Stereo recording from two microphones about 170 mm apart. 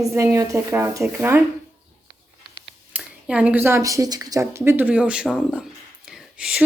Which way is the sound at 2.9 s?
5° right (ahead or behind).